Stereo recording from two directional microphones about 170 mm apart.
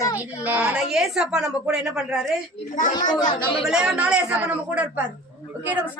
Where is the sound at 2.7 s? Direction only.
50° left (ahead or behind).